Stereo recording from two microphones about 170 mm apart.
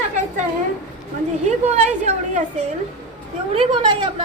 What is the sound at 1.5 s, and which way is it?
Speech, 40° right (ahead or behind).